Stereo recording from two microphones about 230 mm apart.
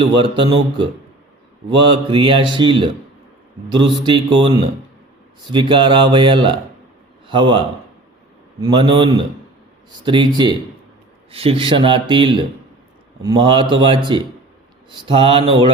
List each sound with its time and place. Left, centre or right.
0.2 s mantra: right
8.6 s mantra: right